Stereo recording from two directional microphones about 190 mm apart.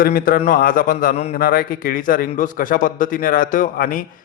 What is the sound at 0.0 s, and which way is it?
A man's voice, 50° left (ahead or behind).